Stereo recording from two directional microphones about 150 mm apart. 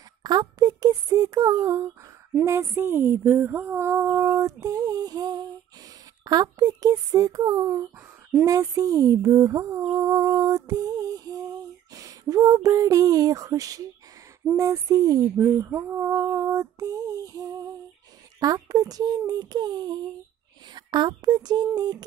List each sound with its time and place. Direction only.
0.2 s speech: 30° right (ahead or behind)
8.5 s a sound: 25° right (ahead or behind)
11.9 s speech: 20° right (ahead or behind)